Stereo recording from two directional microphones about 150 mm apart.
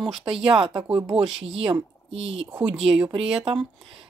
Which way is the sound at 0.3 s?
35° right (ahead or behind).